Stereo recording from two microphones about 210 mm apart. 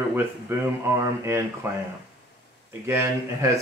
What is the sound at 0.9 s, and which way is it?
Speech, 15° right (ahead or behind).